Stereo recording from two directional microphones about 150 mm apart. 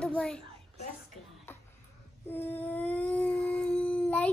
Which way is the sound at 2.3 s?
15° left (ahead or behind).